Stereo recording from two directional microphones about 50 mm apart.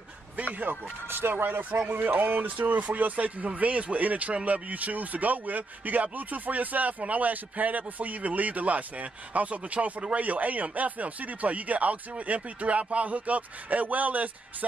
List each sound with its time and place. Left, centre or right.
0.7 s speech: right